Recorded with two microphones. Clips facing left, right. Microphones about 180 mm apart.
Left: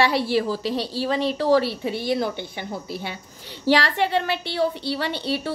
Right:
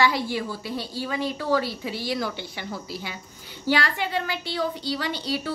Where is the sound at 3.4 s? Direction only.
75° left (ahead or behind).